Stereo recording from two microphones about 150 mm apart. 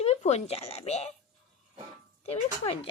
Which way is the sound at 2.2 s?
40° left (ahead or behind).